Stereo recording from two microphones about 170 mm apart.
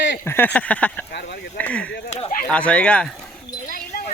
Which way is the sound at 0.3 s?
10° left (ahead or behind).